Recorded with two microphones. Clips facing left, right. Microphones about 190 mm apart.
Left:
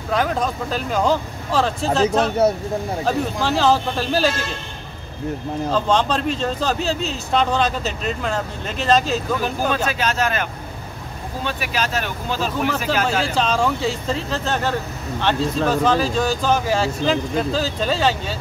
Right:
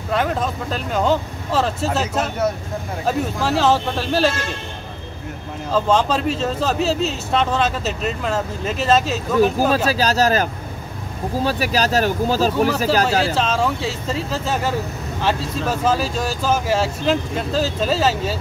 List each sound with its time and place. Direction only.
0.1 s speech: centre (ahead or behind)
5.7 s speech: 5° right (ahead or behind)
9.8 s speech: 35° right (ahead or behind)
13.3 s speech: 5° right (ahead or behind)